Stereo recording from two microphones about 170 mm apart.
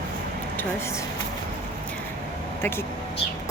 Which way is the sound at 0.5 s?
15° left (ahead or behind).